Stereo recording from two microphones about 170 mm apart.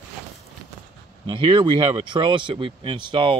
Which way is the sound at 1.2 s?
30° right (ahead or behind).